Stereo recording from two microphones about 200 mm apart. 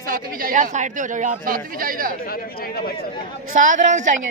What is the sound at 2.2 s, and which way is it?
Speech, 50° left (ahead or behind).